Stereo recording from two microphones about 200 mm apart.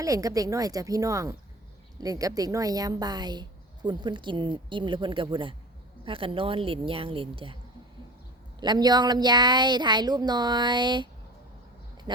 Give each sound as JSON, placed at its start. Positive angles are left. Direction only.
{"t": 0.0, "sound": "speech", "side_deg": -15}
{"t": 8.6, "sound": "speech", "side_deg": -20}